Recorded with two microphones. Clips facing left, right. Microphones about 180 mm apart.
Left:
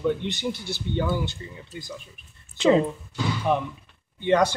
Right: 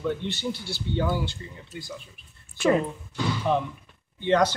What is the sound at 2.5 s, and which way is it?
Speech, 20° left (ahead or behind).